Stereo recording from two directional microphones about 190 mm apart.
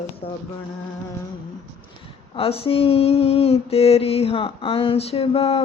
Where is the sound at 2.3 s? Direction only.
30° left (ahead or behind).